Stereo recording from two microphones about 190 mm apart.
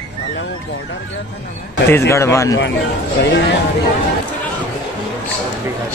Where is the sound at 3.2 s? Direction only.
65° left (ahead or behind).